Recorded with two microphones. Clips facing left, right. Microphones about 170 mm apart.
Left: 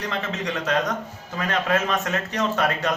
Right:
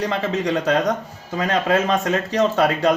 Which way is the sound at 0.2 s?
35° right (ahead or behind).